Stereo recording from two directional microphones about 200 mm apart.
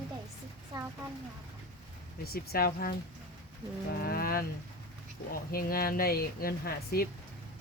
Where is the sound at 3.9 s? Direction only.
50° left (ahead or behind).